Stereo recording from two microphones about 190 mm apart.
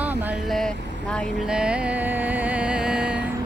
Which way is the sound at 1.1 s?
Centre (ahead or behind).